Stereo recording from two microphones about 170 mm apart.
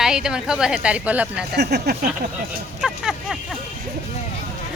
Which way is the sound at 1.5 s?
75° right (ahead or behind).